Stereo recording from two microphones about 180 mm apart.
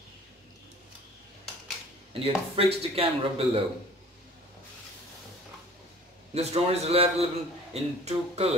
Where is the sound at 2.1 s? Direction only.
30° right (ahead or behind).